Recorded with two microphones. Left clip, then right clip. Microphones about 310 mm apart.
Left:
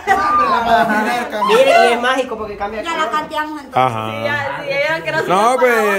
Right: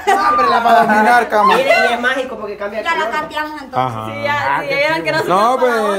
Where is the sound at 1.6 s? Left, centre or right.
Left.